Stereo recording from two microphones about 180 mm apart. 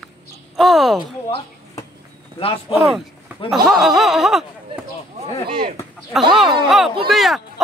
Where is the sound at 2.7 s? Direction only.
Centre (ahead or behind).